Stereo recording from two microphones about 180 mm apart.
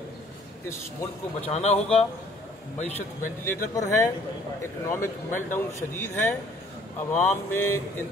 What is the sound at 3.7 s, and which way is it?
A man's voice, 15° left (ahead or behind).